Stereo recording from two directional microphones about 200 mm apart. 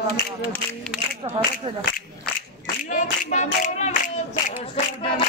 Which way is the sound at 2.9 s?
40° left (ahead or behind).